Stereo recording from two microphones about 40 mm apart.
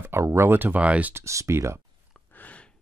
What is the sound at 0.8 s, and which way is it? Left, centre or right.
Speech, right.